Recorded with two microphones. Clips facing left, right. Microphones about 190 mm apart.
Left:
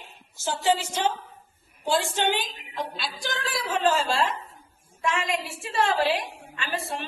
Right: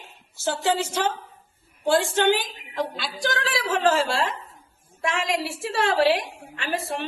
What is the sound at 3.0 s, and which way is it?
A woman's voice, 90° right.